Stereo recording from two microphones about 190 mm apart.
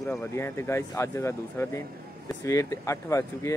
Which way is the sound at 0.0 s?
Centre (ahead or behind).